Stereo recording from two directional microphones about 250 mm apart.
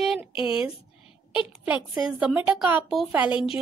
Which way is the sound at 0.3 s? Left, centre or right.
Centre.